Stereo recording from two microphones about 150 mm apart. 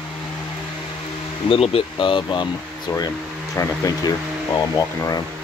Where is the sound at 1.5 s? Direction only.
40° left (ahead or behind); by 5.2 s 20° left (ahead or behind).